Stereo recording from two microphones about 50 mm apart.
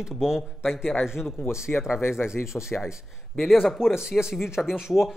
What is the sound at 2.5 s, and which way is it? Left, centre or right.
Speech, left.